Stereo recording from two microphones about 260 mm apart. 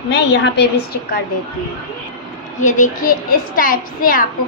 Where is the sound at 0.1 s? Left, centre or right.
Left.